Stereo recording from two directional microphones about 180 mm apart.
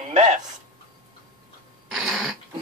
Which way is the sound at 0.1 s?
40° right (ahead or behind).